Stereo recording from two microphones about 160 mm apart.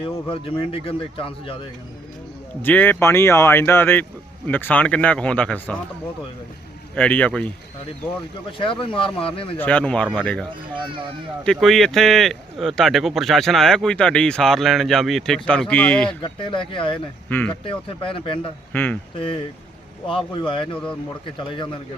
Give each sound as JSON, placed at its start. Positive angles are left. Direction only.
{"t": 0.0, "sound": "speech", "side_deg": 35}
{"t": 2.6, "sound": "speech", "side_deg": 10}
{"t": 6.9, "sound": "speech", "side_deg": 10}
{"t": 8.5, "sound": "speech", "side_deg": 30}
{"t": 9.6, "sound": "speech", "side_deg": 10}
{"t": 11.4, "sound": "speech", "side_deg": 0}
{"t": 16.2, "sound": "speech", "side_deg": 30}
{"t": 17.2, "sound": "speech", "side_deg": 10}
{"t": 17.5, "sound": "speech", "side_deg": 35}
{"t": 18.7, "sound": "speech", "side_deg": 10}
{"t": 20.1, "sound": "speech", "side_deg": 30}